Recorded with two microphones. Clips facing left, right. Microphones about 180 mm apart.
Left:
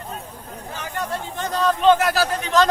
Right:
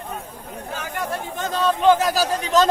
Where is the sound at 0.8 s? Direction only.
10° right (ahead or behind).